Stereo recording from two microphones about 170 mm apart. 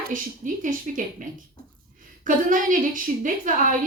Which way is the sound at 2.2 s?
50° right (ahead or behind).